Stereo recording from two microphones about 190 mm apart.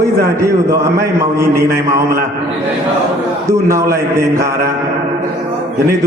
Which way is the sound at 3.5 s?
15° right (ahead or behind).